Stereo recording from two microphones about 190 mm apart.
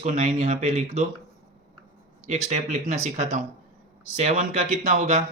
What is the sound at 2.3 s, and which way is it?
Speech, 35° right (ahead or behind).